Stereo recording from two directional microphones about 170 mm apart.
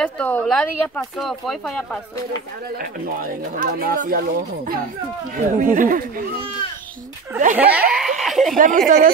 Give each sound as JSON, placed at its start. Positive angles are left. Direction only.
{"t": 0.0, "sound": "speech", "side_deg": 5}
{"t": 2.8, "sound": "speech", "side_deg": -55}
{"t": 7.5, "sound": "speech", "side_deg": -10}
{"t": 8.2, "sound": "a sound", "side_deg": 0}
{"t": 8.5, "sound": "speech", "side_deg": -50}